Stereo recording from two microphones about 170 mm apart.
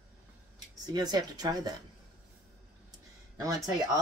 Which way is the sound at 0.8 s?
25° right (ahead or behind).